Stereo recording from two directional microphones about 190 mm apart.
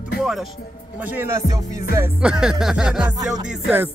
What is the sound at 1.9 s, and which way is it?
Music, 10° right (ahead or behind).